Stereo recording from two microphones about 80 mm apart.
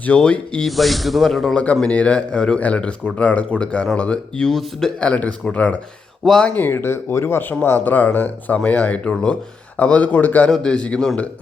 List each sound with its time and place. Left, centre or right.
0.0 s speech: centre
0.8 s speech: centre
1.5 s speech: centre
5.0 s speech: centre
6.2 s speech: centre
6.5 s speech: left
10.5 s speech: centre